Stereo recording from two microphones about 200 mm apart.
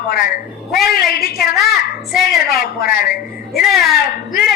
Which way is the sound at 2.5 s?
50° left (ahead or behind).